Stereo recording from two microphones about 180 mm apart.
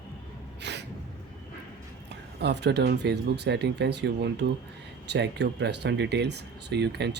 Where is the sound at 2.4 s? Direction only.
70° right (ahead or behind).